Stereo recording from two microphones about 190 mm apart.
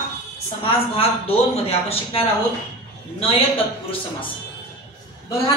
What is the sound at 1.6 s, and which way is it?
Speech, 30° left (ahead or behind).